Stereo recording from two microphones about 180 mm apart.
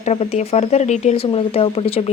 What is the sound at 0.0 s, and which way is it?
A woman's voice, 35° left (ahead or behind).